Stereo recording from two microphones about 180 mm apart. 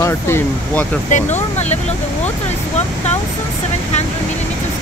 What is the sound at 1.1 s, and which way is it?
Speech, 40° left (ahead or behind).